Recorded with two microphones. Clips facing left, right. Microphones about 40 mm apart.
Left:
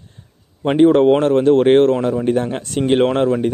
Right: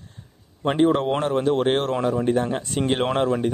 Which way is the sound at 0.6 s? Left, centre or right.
Centre.